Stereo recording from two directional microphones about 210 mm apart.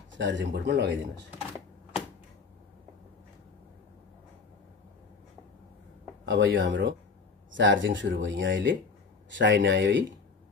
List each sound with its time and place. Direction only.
0.2 s speech: 60° right (ahead or behind)
6.2 s speech: 60° right (ahead or behind)